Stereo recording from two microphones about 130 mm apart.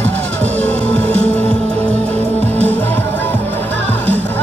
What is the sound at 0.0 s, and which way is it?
Music, 10° left (ahead or behind).